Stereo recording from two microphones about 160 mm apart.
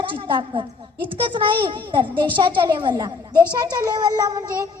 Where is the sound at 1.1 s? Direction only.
30° right (ahead or behind).